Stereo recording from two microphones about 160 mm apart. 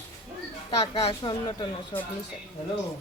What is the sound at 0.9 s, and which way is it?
Speech, 35° left (ahead or behind).